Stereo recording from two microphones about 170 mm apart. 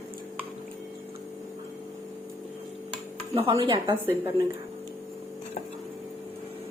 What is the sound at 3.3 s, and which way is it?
Speech, 35° right (ahead or behind).